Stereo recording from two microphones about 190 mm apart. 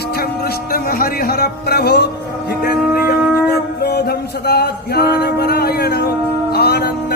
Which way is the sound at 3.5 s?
55° left (ahead or behind).